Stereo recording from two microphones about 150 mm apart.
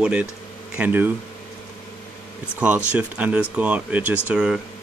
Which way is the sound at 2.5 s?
10° right (ahead or behind).